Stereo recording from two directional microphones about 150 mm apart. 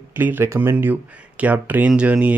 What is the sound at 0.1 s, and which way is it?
Speech, 15° right (ahead or behind).